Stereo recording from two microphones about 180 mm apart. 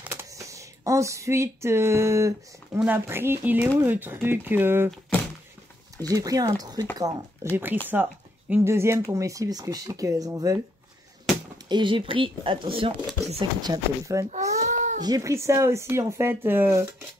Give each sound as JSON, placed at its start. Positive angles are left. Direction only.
{"t": 0.0, "sound": "speech", "side_deg": -15}
{"t": 5.9, "sound": "speech", "side_deg": -20}
{"t": 14.6, "sound": "cat", "side_deg": -40}
{"t": 15.0, "sound": "speech", "side_deg": -20}